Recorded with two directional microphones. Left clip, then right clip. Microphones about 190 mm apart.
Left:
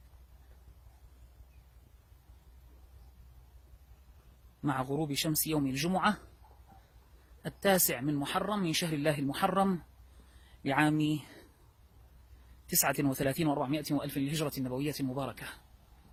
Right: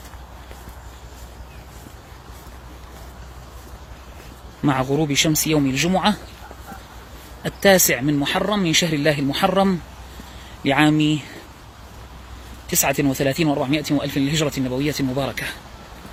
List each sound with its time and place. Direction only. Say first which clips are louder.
4.6 s speech: right 13 dB; 30° left (ahead or behind)
7.4 s speech: right 14 dB; 30° left (ahead or behind)
12.9 s speech: right 12 dB; 40° left (ahead or behind)